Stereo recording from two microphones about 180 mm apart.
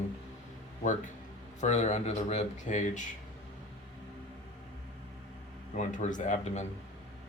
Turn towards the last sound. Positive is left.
turn(degrees=40)  # may be behind; listen again after turning